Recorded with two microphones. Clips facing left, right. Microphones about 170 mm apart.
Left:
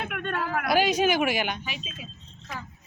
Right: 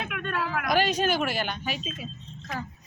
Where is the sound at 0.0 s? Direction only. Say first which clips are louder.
Left 1 dB; 55° left (ahead or behind).